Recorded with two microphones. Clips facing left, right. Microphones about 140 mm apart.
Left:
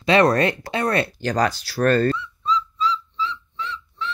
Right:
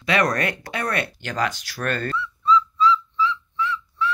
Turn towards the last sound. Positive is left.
turn(degrees=25)  # may be behind; listen again after turning